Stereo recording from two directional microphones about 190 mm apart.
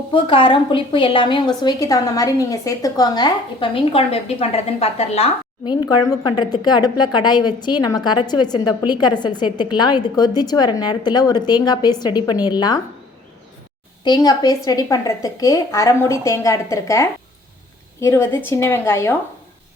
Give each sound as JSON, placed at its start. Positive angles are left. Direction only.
{"t": 0.1, "sound": "a woman's voice", "side_deg": 25}
{"t": 6.0, "sound": "a woman's voice", "side_deg": 20}
{"t": 14.0, "sound": "a woman's voice", "side_deg": 20}